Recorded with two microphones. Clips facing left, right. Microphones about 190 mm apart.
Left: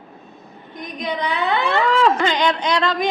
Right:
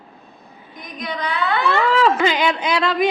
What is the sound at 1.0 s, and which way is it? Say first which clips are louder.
Speech: left 1 dB; 20° left (ahead or behind).